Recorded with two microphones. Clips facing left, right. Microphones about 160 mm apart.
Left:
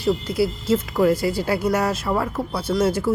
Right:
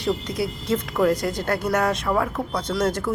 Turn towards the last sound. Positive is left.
turn(degrees=10)  # may be behind; listen again after turning